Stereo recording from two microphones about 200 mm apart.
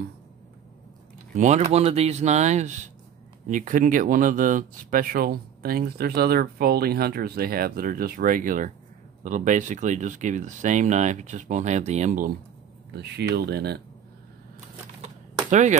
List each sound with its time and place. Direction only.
1.3 s speech: 35° right (ahead or behind)
12.9 s speech: 55° right (ahead or behind)
15.5 s speech: 35° right (ahead or behind)